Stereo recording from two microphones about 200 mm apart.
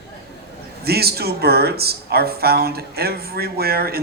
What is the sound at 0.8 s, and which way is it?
Speech, 50° right (ahead or behind).